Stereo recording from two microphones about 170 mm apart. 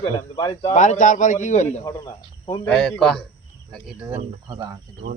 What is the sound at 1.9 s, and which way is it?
Speech, 20° left (ahead or behind).